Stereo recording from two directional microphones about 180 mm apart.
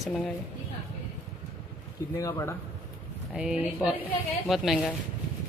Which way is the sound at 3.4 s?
5° right (ahead or behind).